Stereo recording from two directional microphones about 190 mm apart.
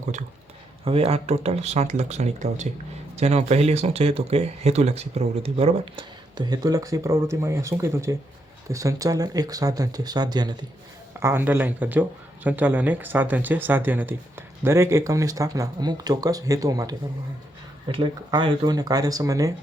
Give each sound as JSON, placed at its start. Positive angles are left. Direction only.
{"t": 0.9, "sound": "speech", "side_deg": -30}